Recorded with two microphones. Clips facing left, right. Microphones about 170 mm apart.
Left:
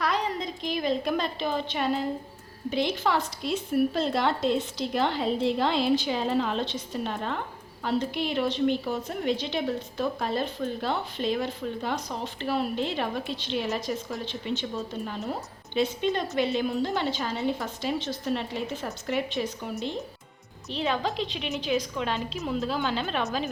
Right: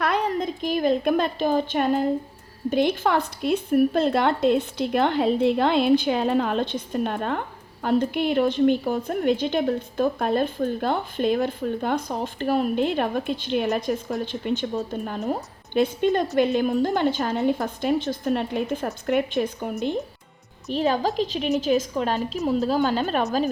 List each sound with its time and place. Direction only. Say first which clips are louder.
0.0 s a woman's voice: right 5 dB; 60° right (ahead or behind)
20.7 s a woman's voice: right 6 dB; 40° right (ahead or behind)